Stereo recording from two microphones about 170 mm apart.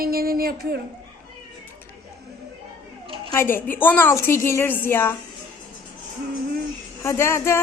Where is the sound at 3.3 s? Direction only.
15° left (ahead or behind).